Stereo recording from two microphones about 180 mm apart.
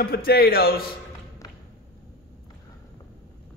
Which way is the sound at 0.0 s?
60° left (ahead or behind).